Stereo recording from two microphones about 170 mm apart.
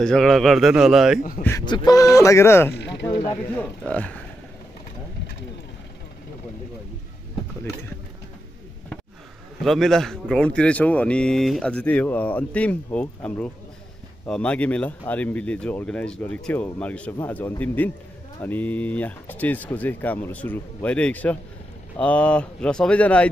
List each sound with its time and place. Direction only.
0.0 s a man's voice: 5° left (ahead or behind)
1.9 s speech: 20° left (ahead or behind)
2.7 s speech: 90° left
3.3 s speech: 10° left (ahead or behind)
9.6 s speech: centre (ahead or behind)